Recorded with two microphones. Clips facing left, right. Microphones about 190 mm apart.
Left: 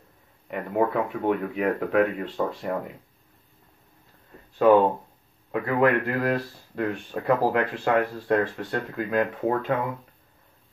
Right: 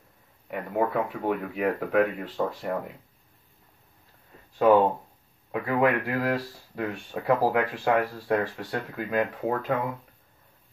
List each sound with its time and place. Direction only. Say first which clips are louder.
0.5 s speech: left 2 dB; centre (ahead or behind)
5.5 s speech: left 2 dB; 5° right (ahead or behind)